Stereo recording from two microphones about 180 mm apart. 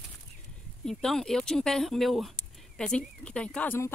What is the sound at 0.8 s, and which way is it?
Speech, centre (ahead or behind).